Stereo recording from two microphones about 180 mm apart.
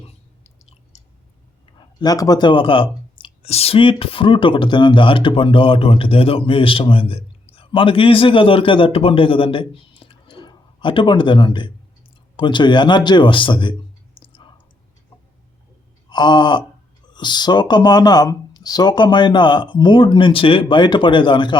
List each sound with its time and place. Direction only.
0.0 s chewing: 35° left (ahead or behind)
2.0 s speech: 20° left (ahead or behind)
14.2 s clicking: 25° left (ahead or behind)
16.0 s gasp: 25° left (ahead or behind)
17.2 s speech: 25° left (ahead or behind)